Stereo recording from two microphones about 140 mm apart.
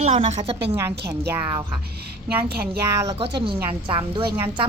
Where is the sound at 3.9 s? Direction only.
35° right (ahead or behind).